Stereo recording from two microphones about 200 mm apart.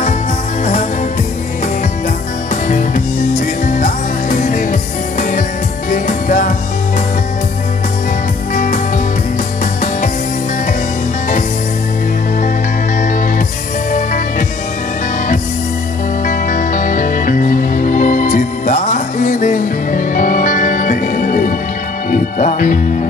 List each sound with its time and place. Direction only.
2.5 s music: 40° left (ahead or behind)
5.9 s music: 40° left (ahead or behind)
8.5 s music: 40° left (ahead or behind)
16.3 s music: 40° left (ahead or behind)